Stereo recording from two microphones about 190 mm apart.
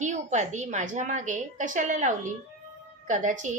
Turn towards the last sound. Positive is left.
turn(degrees=-40)  # may be behind; listen again after turning